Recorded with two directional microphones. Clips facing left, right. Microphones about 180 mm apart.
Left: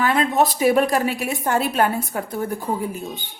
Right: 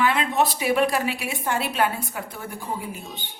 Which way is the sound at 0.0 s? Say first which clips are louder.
Left 3 dB; 40° left (ahead or behind).